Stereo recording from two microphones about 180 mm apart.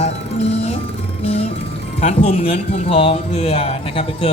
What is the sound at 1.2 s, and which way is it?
Music, 30° left (ahead or behind).